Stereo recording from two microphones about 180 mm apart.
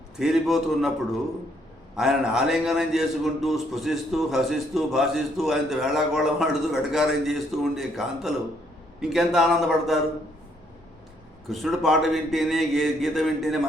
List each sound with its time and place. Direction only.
0.2 s a man's voice: centre (ahead or behind)
2.0 s a man's voice: centre (ahead or behind)
11.4 s a man's voice: centre (ahead or behind)